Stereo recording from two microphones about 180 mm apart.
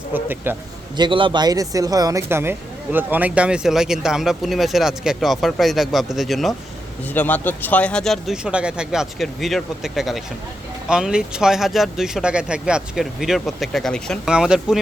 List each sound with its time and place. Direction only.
0.1 s speech: 10° right (ahead or behind)
0.9 s speech: 25° right (ahead or behind); by 14.8 s 5° right (ahead or behind)